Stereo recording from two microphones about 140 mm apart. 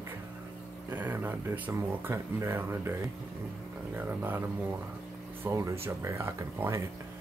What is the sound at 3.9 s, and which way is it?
Speech, 15° right (ahead or behind).